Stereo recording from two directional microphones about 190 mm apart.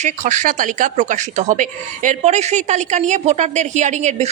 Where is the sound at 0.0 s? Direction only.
40° right (ahead or behind).